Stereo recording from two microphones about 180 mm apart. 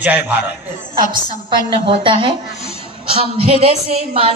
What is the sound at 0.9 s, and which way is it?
Speech, 50° right (ahead or behind).